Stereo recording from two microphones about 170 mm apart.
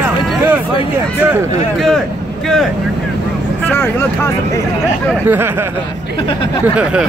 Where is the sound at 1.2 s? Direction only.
10° right (ahead or behind).